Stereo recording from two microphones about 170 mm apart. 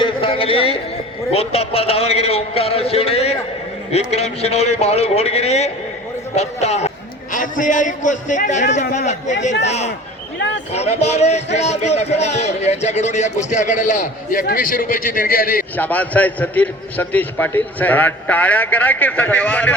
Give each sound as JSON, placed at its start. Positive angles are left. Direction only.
{"t": 0.0, "sound": "music", "side_deg": 30}
{"t": 1.3, "sound": "a man's voice", "side_deg": 35}
{"t": 15.7, "sound": "a man's voice", "side_deg": 10}